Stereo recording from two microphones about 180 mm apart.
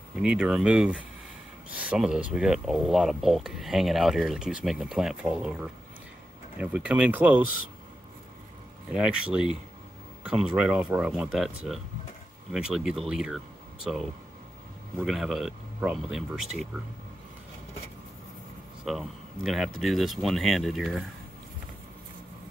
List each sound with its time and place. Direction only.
0.2 s speech: 5° right (ahead or behind)
8.9 s speech: 5° right (ahead or behind)
15.0 s speech: centre (ahead or behind)
18.9 s speech: centre (ahead or behind)